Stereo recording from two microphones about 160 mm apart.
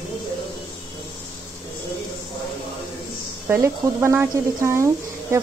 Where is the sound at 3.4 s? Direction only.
15° right (ahead or behind).